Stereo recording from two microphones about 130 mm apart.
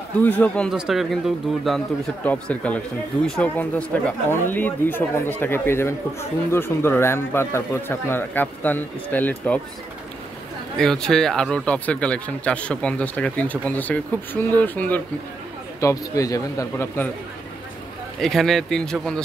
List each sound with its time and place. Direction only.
0.2 s speech: 10° left (ahead or behind)
0.7 s speech: 5° right (ahead or behind); by 9.6 s 10° left (ahead or behind)
10.8 s speech: 5° left (ahead or behind)
15.8 s speech: 25° left (ahead or behind)
18.2 s speech: centre (ahead or behind)